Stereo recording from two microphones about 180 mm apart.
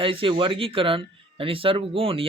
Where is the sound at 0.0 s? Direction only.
30° right (ahead or behind).